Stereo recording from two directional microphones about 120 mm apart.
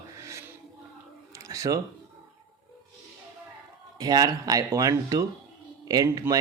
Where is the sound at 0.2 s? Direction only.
25° right (ahead or behind).